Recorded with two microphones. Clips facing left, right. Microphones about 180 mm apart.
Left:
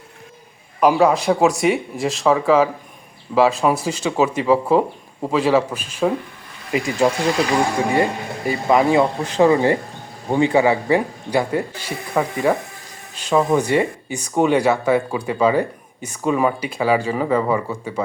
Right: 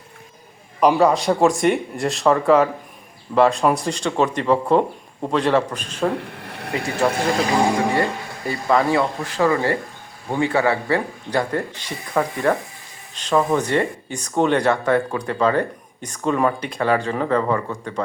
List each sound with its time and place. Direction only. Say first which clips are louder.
0.8 s speech: left 1 dB; centre (ahead or behind)
6.1 s a sound: right 2 dB; 70° right (ahead or behind)
7.9 s speech: left 2 dB; 15° left (ahead or behind)